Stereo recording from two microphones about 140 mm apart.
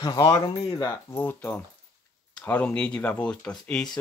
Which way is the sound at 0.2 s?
40° left (ahead or behind).